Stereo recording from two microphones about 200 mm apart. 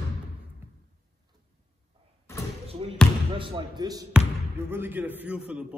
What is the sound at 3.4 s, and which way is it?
A man's voice, 25° right (ahead or behind).